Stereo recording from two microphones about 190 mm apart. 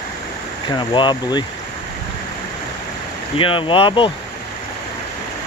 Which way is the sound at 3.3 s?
25° left (ahead or behind).